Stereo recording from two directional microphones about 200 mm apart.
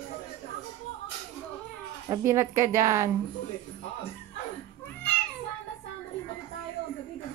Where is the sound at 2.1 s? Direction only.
15° right (ahead or behind).